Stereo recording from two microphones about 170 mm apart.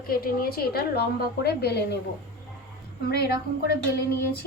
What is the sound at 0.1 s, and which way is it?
A woman's voice, 60° left (ahead or behind).